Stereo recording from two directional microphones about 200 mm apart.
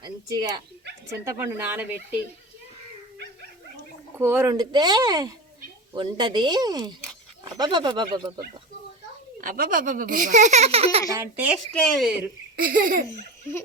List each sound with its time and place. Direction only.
0.0 s speech: 20° right (ahead or behind)
4.2 s speech: 10° right (ahead or behind)
9.4 s speech: 45° right (ahead or behind)
11.1 s speech: 10° right (ahead or behind)
11.7 s speech: 5° left (ahead or behind)
12.5 s laughter: 45° right (ahead or behind)